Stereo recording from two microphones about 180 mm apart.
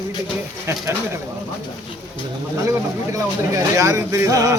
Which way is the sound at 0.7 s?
15° right (ahead or behind).